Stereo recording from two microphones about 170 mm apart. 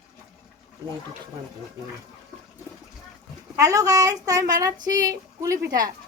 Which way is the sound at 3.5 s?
20° right (ahead or behind).